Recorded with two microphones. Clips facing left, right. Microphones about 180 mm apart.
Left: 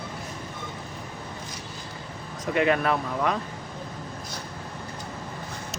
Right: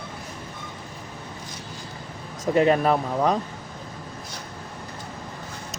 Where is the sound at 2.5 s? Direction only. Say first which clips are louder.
Right 4 dB; 35° right (ahead or behind).